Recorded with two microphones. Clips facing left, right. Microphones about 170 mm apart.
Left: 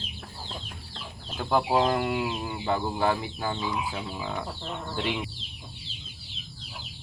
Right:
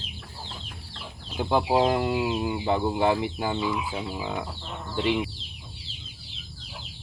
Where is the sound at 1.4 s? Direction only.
15° right (ahead or behind).